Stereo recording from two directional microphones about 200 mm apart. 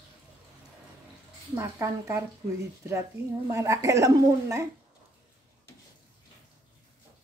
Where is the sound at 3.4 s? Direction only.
15° right (ahead or behind).